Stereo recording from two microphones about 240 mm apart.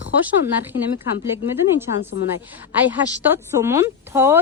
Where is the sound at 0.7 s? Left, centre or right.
Left.